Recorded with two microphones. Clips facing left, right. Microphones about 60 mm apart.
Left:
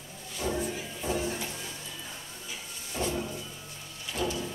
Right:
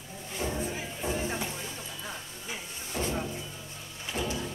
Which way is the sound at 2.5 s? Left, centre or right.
Right.